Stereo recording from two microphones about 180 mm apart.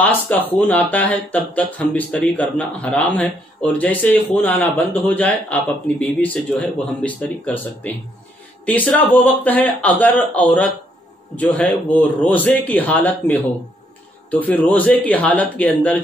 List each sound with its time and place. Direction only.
0.0 s speech: 10° left (ahead or behind)